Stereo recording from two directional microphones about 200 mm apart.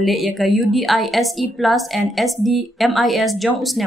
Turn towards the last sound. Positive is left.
turn(degrees=0)  # may be behind; listen again after turning